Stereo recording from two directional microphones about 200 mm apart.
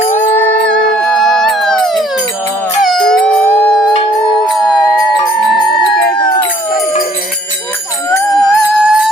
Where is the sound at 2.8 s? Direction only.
5° left (ahead or behind).